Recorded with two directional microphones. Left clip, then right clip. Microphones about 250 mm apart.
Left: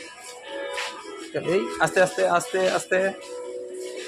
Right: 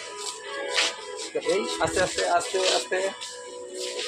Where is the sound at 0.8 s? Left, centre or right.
Right.